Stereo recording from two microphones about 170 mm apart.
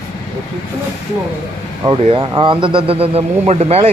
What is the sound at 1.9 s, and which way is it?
A man's voice, 30° right (ahead or behind).